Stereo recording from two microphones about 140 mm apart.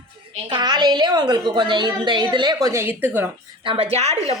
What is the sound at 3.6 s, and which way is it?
Speech, 45° right (ahead or behind).